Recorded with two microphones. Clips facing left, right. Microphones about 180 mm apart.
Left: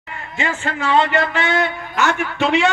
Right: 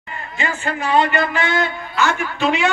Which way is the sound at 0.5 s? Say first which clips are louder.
Left 1 dB; 90° left.